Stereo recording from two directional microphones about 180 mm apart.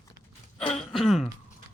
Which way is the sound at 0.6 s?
35° left (ahead or behind).